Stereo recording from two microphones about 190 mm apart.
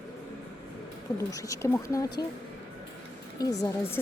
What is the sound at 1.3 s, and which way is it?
Speech, 15° left (ahead or behind).